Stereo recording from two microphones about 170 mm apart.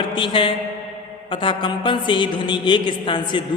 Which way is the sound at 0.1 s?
30° left (ahead or behind).